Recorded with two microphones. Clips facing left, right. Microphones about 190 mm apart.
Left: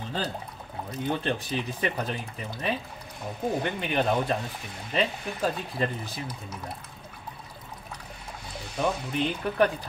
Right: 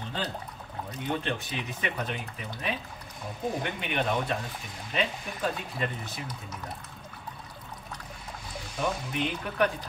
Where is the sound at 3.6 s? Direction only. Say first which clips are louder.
Left 4 dB; 35° left (ahead or behind).